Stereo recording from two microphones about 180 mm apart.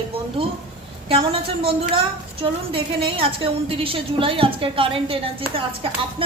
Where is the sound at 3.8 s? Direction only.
30° right (ahead or behind).